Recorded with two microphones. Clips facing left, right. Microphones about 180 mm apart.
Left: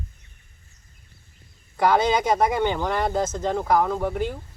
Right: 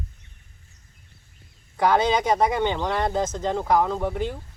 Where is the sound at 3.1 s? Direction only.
15° right (ahead or behind).